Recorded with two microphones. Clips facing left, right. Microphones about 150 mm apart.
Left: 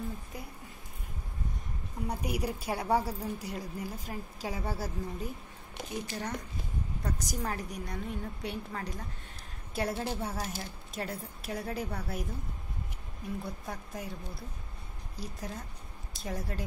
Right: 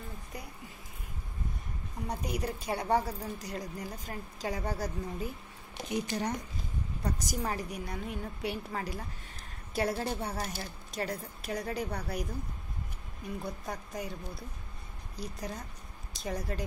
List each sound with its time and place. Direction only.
2.0 s a woman's voice: 10° left (ahead or behind)
5.9 s speech: 15° right (ahead or behind)
7.0 s a woman's voice: centre (ahead or behind)